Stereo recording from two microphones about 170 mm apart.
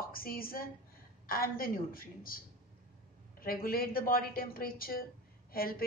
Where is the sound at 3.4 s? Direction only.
60° left (ahead or behind).